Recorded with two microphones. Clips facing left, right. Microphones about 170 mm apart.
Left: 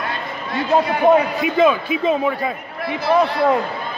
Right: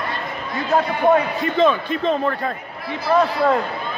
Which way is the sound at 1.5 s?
5° left (ahead or behind).